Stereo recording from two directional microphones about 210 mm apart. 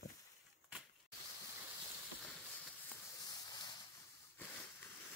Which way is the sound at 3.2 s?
20° left (ahead or behind).